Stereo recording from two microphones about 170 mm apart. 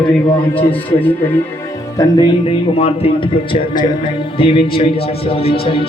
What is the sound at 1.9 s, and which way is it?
Music, 25° left (ahead or behind).